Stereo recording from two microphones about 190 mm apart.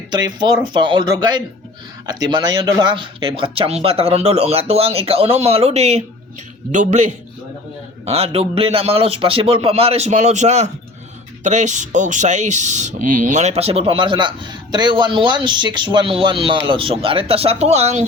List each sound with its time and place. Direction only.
0.1 s speech: 20° right (ahead or behind)